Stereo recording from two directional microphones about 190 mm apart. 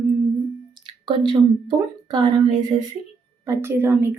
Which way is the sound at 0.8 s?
25° right (ahead or behind).